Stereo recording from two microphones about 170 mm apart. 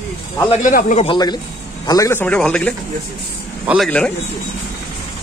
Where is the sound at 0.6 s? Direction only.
50° left (ahead or behind).